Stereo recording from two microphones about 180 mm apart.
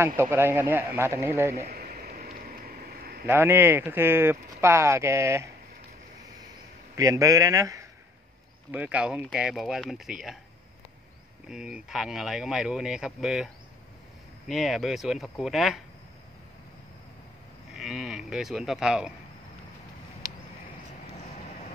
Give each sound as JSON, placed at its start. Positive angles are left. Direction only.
{"t": 0.0, "sound": "speech", "side_deg": -15}
{"t": 1.7, "sound": "a sound", "side_deg": -55}
{"t": 3.3, "sound": "speech", "side_deg": -10}
{"t": 7.0, "sound": "speech", "side_deg": -20}
{"t": 8.7, "sound": "speech", "side_deg": -5}
{"t": 11.4, "sound": "speech", "side_deg": -5}
{"t": 14.5, "sound": "speech", "side_deg": 0}
{"t": 17.7, "sound": "speech", "side_deg": 0}